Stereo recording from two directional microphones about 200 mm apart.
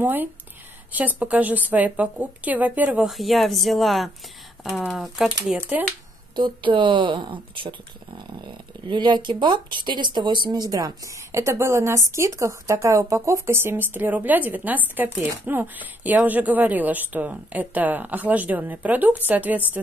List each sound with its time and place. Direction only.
0.0 s speech: 10° right (ahead or behind)
6.3 s speech: 25° right (ahead or behind); by 19.8 s 10° right (ahead or behind)